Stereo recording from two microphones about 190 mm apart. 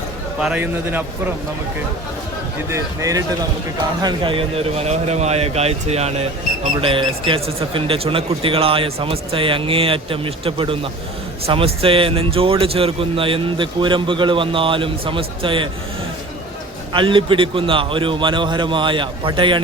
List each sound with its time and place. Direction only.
0.3 s a man's voice: 5° right (ahead or behind)
2.6 s a man's voice: 15° right (ahead or behind)
16.9 s speech: 25° right (ahead or behind)